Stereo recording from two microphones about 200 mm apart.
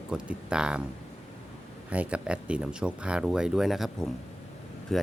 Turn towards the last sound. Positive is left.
turn(degrees=0)  # may be behind; listen again after turning